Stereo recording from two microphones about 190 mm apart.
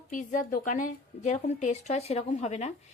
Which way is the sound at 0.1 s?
40° left (ahead or behind).